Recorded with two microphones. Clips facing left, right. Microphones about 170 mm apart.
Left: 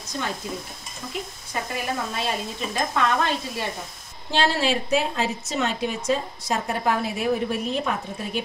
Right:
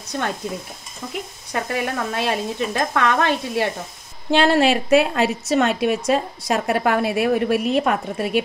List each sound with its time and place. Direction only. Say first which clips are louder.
0.1 s speech: right 5 dB; 55° right (ahead or behind)
1.5 s a woman's voice: right 5 dB; 70° right (ahead or behind)